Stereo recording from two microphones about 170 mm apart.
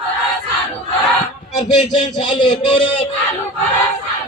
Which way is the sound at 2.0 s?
25° left (ahead or behind).